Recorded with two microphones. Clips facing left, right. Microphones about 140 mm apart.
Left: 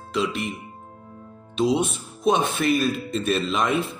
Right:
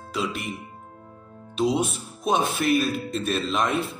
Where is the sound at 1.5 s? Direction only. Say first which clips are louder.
Left 2 dB; centre (ahead or behind).